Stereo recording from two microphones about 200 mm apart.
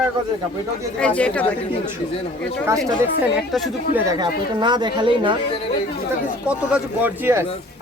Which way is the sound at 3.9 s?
15° right (ahead or behind).